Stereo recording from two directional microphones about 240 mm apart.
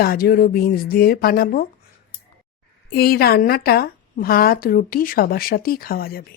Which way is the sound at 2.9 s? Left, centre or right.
Left.